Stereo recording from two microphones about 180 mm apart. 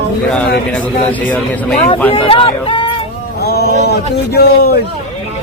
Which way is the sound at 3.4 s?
60° left (ahead or behind).